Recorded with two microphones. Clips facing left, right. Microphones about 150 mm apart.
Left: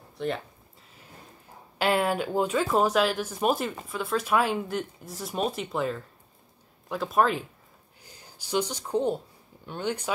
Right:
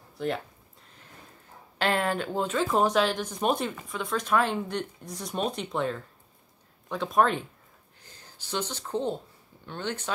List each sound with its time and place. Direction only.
0.2 s speech: centre (ahead or behind)
1.8 s speech: 10° left (ahead or behind)